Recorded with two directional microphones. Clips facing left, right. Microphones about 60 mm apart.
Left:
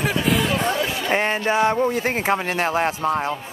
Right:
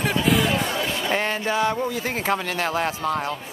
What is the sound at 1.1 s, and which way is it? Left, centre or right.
Speech, left.